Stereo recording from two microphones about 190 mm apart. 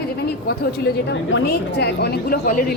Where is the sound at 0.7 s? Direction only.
70° left (ahead or behind); by 2.6 s 50° left (ahead or behind).